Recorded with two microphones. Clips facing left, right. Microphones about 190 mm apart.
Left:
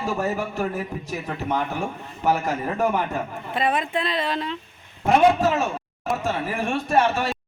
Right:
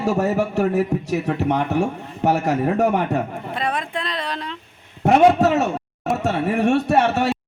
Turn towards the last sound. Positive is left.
turn(degrees=-70)  # may be behind; listen again after turning